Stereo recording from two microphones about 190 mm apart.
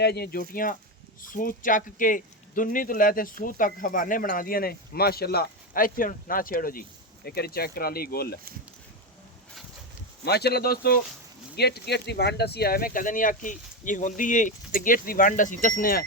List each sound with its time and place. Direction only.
0.0 s speech: 55° left (ahead or behind)
10.2 s speech: 55° left (ahead or behind)